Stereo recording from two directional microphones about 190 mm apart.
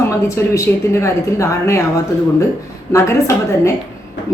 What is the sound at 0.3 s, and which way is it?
A woman's voice, 15° left (ahead or behind).